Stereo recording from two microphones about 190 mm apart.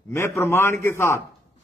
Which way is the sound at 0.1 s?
15° left (ahead or behind).